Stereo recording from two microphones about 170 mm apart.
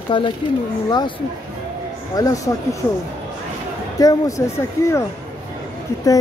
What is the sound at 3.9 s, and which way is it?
Speech, 20° left (ahead or behind).